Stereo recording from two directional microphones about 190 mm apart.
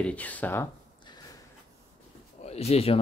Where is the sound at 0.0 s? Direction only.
5° left (ahead or behind).